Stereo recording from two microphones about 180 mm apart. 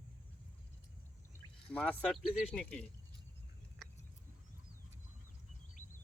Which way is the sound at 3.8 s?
Centre (ahead or behind).